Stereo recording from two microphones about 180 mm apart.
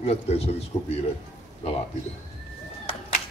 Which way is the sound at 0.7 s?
20° left (ahead or behind).